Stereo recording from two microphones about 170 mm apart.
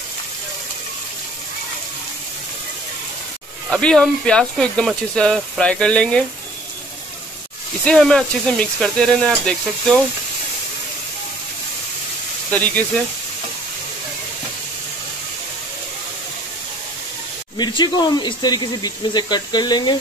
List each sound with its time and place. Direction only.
3.7 s speech: 5° left (ahead or behind)
7.8 s speech: 5° left (ahead or behind)
12.4 s speech: 10° left (ahead or behind)
17.6 s speech: 25° left (ahead or behind)